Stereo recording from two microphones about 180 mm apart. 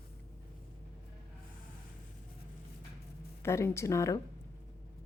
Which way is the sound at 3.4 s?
15° left (ahead or behind).